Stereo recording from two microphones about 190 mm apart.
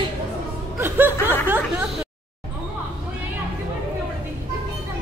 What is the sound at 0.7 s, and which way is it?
Chuckle, 10° right (ahead or behind).